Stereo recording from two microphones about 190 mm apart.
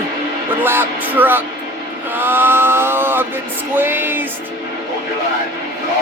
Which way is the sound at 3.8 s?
10° right (ahead or behind).